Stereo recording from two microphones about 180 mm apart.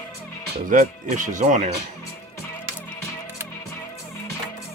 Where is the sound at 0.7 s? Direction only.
45° right (ahead or behind).